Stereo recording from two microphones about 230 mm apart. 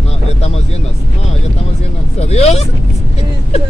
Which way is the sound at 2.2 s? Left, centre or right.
Left.